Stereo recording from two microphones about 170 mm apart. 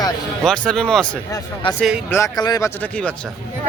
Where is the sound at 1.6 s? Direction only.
30° left (ahead or behind).